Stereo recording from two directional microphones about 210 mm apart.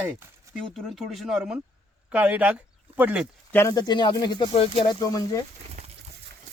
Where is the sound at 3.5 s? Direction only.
15° left (ahead or behind).